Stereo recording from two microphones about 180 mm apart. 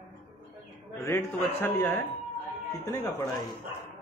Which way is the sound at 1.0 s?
15° left (ahead or behind).